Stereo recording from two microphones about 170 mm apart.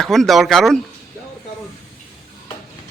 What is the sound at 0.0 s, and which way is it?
Speech, centre (ahead or behind).